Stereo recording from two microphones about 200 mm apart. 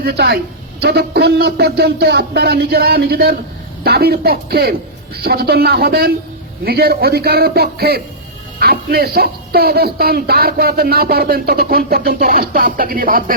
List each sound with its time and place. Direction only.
0.0 s speech: 50° right (ahead or behind)